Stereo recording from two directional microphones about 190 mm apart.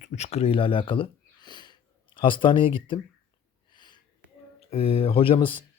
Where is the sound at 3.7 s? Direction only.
25° left (ahead or behind).